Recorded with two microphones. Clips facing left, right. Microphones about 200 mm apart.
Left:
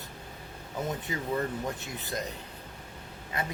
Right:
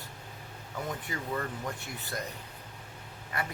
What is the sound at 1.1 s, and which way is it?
Speech, 20° left (ahead or behind).